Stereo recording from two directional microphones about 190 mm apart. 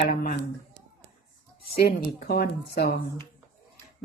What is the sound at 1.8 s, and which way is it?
Speech, 55° left (ahead or behind).